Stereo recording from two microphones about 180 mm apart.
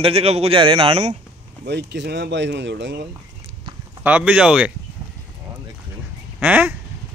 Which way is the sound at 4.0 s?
10° right (ahead or behind).